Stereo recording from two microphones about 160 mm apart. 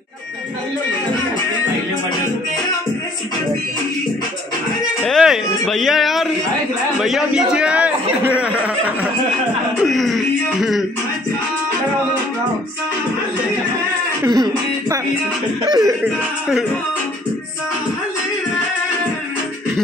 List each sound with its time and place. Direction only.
5.0 s music: centre (ahead or behind)
7.0 s a man's voice: centre (ahead or behind)
14.2 s music: 25° right (ahead or behind)
15.6 s speech: 20° right (ahead or behind)